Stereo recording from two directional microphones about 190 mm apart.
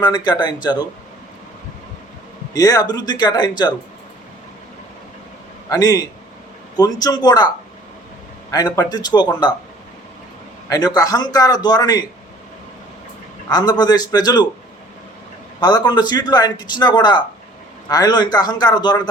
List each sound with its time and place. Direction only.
0.0 s speech: 20° left (ahead or behind)
2.5 s speech: 20° left (ahead or behind)
5.7 s speech: 20° left (ahead or behind)
10.7 s speech: 20° left (ahead or behind)
13.5 s speech: 20° left (ahead or behind)
15.6 s speech: 20° left (ahead or behind)